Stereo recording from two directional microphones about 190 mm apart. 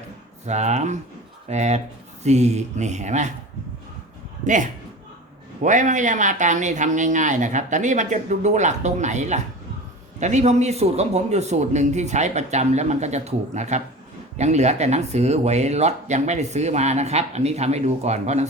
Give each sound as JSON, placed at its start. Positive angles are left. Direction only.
{"t": 0.4, "sound": "speech", "side_deg": -35}
{"t": 4.4, "sound": "speech", "side_deg": -40}